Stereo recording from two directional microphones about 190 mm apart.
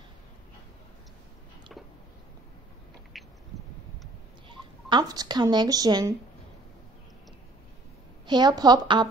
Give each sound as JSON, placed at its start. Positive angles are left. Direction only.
{"t": 4.5, "sound": "speech", "side_deg": -25}
{"t": 8.3, "sound": "a woman's voice", "side_deg": -20}